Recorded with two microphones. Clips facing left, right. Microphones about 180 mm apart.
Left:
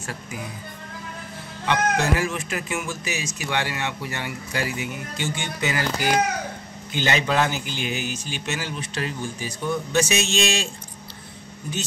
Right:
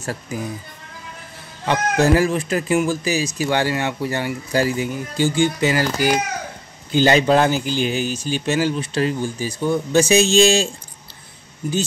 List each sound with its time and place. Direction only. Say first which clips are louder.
0.0 s speech: right 7 dB; 40° right (ahead or behind)
1.7 s speech: right 5 dB; 35° right (ahead or behind)